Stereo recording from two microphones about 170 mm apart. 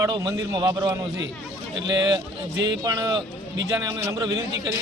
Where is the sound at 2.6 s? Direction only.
25° right (ahead or behind).